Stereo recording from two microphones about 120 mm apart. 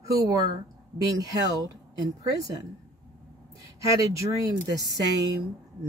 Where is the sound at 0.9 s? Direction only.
30° right (ahead or behind).